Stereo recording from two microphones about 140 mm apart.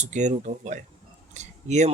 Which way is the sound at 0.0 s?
60° right (ahead or behind).